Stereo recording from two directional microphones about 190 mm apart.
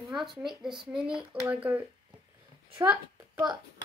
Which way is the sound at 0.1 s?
Centre (ahead or behind).